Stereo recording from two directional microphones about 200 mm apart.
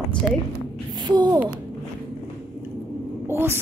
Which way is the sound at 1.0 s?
20° right (ahead or behind).